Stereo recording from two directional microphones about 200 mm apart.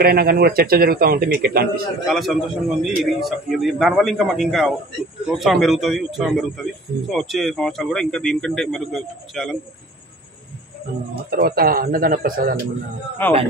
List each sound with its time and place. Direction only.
0.0 s a man's voice: 50° right (ahead or behind)
2.0 s speech: centre (ahead or behind)
11.2 s a man's voice: 50° right (ahead or behind)
13.2 s a man's voice: 10° left (ahead or behind)